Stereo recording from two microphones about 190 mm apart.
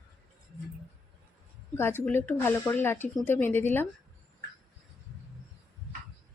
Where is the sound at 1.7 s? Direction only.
10° left (ahead or behind).